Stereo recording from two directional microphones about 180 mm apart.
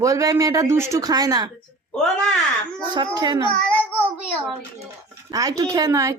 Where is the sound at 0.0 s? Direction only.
20° right (ahead or behind).